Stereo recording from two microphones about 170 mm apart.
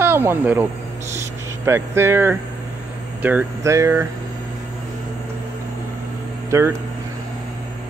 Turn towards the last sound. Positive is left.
turn(degrees=-15)  # may be behind; listen again after turning